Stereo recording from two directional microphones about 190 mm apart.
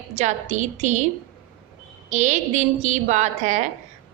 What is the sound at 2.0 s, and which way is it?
A woman's voice, 40° right (ahead or behind).